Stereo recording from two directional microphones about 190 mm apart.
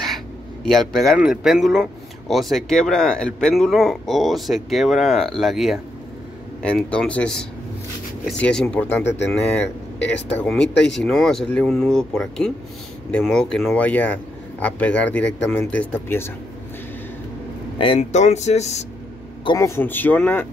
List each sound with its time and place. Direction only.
0.7 s a man's voice: centre (ahead or behind)
17.7 s speech: 30° left (ahead or behind)
19.4 s a man's voice: 15° left (ahead or behind)